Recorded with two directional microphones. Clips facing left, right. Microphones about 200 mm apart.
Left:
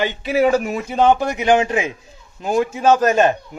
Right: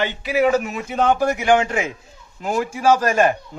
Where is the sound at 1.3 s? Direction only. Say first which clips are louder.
Left 1 dB; 20° left (ahead or behind).